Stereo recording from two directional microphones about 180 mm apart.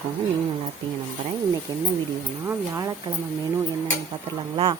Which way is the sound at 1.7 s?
25° right (ahead or behind).